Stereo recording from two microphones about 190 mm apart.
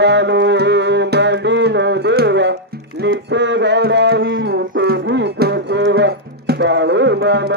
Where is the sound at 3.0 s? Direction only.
65° right (ahead or behind).